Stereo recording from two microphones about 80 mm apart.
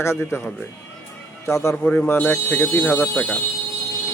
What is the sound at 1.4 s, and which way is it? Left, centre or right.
Speech, left.